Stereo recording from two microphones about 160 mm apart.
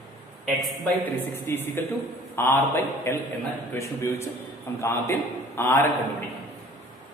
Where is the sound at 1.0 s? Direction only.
10° left (ahead or behind).